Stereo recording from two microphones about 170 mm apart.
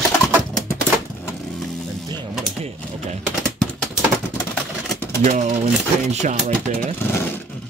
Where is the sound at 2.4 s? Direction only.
35° right (ahead or behind).